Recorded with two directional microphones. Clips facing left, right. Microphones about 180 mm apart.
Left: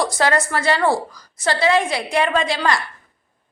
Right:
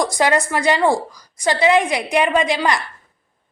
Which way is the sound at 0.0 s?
15° right (ahead or behind).